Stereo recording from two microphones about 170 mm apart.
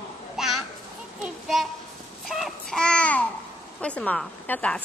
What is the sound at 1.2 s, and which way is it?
Child singing, centre (ahead or behind).